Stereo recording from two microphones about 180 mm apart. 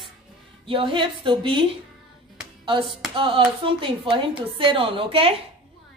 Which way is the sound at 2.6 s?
30° right (ahead or behind).